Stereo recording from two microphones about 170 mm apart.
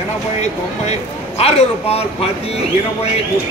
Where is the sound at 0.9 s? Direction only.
40° left (ahead or behind).